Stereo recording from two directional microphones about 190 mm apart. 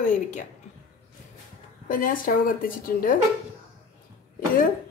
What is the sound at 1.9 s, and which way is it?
A woman's voice, 45° left (ahead or behind).